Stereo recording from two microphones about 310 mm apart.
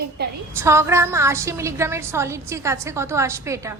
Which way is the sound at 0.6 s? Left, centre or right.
Centre.